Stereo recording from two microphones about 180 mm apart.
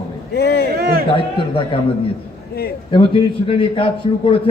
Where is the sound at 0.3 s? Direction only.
65° left (ahead or behind).